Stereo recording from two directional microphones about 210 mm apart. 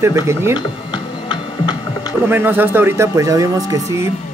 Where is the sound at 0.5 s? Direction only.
20° left (ahead or behind).